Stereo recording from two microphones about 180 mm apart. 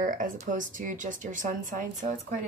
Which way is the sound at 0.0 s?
45° right (ahead or behind).